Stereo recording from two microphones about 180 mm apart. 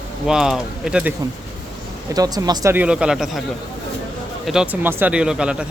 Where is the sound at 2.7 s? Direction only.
5° right (ahead or behind).